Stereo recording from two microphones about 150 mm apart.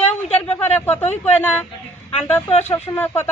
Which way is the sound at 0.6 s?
15° left (ahead or behind).